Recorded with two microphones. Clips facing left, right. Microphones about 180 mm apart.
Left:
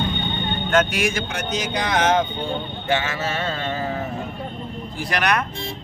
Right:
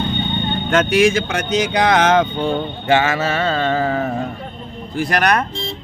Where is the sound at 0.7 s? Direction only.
90° right.